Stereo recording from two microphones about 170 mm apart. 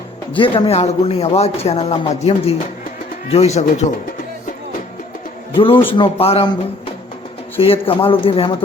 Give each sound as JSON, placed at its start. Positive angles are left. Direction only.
{"t": 0.3, "sound": "speech", "side_deg": 30}
{"t": 5.5, "sound": "speech", "side_deg": 30}
{"t": 7.6, "sound": "speech", "side_deg": 35}